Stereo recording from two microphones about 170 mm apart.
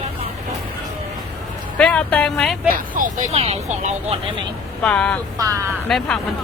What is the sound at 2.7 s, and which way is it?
Speech, 50° right (ahead or behind).